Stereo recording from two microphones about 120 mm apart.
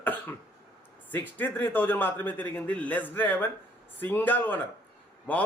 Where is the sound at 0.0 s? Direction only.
15° left (ahead or behind).